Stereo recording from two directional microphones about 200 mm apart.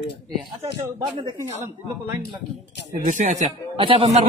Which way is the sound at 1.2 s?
25° right (ahead or behind).